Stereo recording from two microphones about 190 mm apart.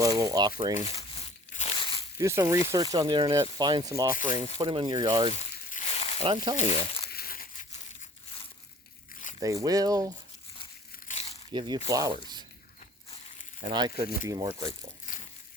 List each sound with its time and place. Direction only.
0.0 s a sound: 20° right (ahead or behind)
0.7 s crumpling: 30° left (ahead or behind)
2.1 s speech: 15° right (ahead or behind)
5.3 s a sound: 35° left (ahead or behind)
6.1 s speech: 25° right (ahead or behind)
7.1 s a sound: 50° left (ahead or behind)
9.4 s speech: 20° right (ahead or behind)
11.1 s biting: 35° left (ahead or behind)
11.5 s speech: 20° right (ahead or behind)
11.9 s rub: 20° right (ahead or behind)
13.7 s speech: 20° right (ahead or behind)
15.0 s crushing: 40° left (ahead or behind)